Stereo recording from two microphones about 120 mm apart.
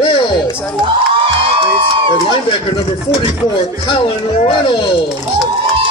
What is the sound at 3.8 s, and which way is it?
Speech, 45° left (ahead or behind).